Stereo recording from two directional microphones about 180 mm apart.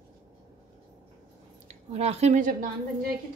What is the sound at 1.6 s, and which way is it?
Speech, 35° right (ahead or behind).